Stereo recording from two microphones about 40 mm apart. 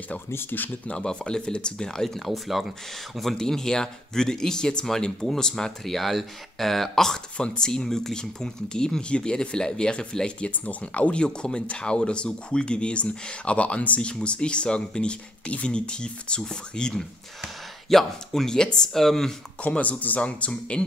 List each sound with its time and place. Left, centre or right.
0.3 s speech: left
0.8 s speech: left; by 2.6 s centre
3.3 s speech: centre
7.3 s speech: left
10.5 s speech: left; by 17.0 s centre
17.8 s speech: centre
19.6 s speech: left